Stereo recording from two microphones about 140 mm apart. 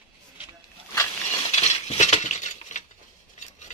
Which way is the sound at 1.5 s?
50° left (ahead or behind).